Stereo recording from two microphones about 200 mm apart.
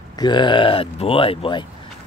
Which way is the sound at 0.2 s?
20° left (ahead or behind).